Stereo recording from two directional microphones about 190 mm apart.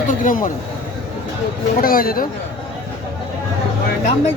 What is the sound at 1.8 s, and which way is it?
Speech, 50° left (ahead or behind).